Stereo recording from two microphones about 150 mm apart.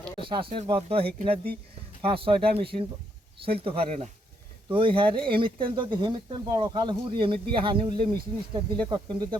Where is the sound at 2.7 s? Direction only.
50° right (ahead or behind).